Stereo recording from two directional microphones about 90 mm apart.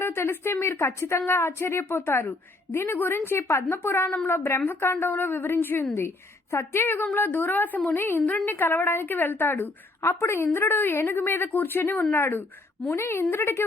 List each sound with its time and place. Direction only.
0.0 s a woman's voice: 25° left (ahead or behind)